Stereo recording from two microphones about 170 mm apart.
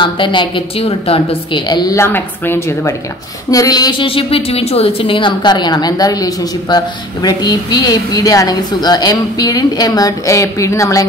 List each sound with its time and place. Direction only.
0.0 s a woman's voice: 30° left (ahead or behind)
2.0 s a woman's voice: 10° left (ahead or behind)